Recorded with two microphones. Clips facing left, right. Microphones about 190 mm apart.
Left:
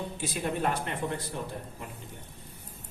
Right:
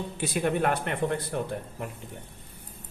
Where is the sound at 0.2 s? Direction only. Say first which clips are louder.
Right 6 dB; 60° right (ahead or behind).